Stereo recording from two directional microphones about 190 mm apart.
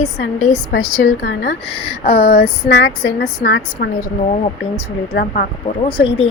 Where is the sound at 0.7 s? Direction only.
60° left (ahead or behind).